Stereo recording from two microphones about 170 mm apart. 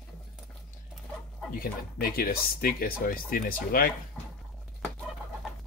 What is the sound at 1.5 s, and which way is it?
Speech, 60° left (ahead or behind).